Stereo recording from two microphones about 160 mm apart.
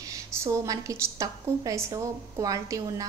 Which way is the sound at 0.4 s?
20° right (ahead or behind).